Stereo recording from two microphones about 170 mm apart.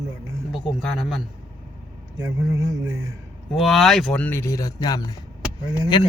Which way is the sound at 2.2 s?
20° right (ahead or behind).